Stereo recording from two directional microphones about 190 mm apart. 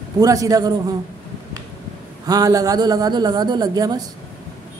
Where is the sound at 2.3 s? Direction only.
20° right (ahead or behind).